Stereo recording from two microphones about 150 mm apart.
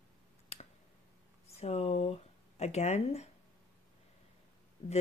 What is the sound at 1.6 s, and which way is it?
Speech, 45° left (ahead or behind).